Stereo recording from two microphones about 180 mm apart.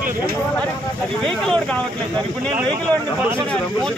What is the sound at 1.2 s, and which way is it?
Speech, centre (ahead or behind).